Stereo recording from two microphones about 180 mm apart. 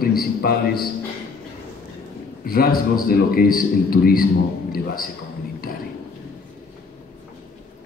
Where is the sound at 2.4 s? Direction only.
55° left (ahead or behind).